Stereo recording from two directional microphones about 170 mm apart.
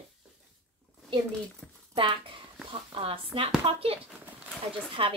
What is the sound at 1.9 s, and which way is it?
Speech, 30° right (ahead or behind).